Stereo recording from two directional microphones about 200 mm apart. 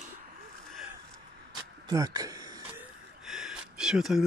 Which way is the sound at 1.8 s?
20° right (ahead or behind).